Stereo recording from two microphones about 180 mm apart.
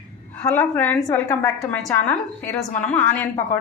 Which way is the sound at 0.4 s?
10° left (ahead or behind).